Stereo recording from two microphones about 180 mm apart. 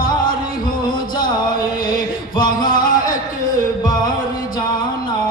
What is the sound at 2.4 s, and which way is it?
Singing, 50° left (ahead or behind).